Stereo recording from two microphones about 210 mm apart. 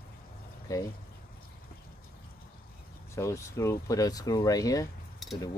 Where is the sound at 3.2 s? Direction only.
15° left (ahead or behind).